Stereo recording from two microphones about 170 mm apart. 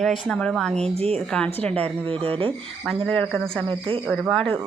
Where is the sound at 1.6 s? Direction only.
10° left (ahead or behind).